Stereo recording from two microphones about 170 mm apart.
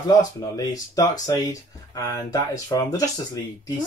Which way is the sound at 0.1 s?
20° left (ahead or behind).